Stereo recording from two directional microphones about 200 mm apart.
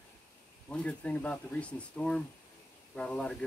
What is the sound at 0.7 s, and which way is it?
Speech, 5° left (ahead or behind).